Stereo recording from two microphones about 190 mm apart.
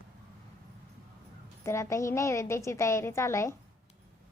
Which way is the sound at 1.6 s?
15° left (ahead or behind).